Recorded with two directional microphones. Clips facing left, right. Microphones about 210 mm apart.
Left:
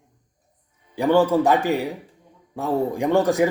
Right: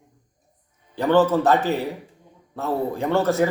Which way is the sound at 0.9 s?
10° left (ahead or behind).